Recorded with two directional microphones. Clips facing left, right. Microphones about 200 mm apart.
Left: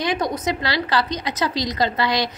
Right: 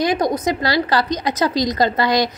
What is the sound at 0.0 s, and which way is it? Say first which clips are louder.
A woman's voice: right 5 dB; 40° right (ahead or behind).